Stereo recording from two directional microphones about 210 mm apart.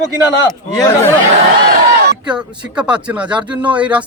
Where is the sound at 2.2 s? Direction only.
5° right (ahead or behind).